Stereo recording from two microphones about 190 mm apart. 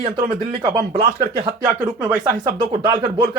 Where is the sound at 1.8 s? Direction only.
15° right (ahead or behind).